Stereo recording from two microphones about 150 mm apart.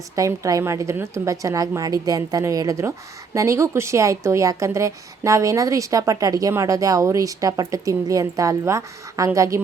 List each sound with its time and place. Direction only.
0.2 s speech: 20° right (ahead or behind)